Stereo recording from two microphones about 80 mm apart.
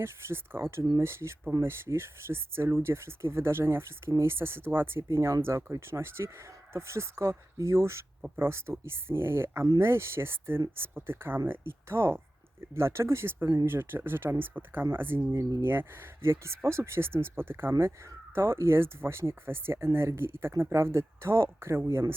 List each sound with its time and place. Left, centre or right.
0.0 s speech: right
15.3 s speech: right
15.6 s speech: right